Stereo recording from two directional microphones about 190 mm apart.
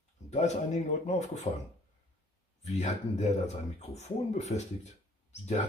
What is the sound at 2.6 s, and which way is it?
Speech, 35° left (ahead or behind).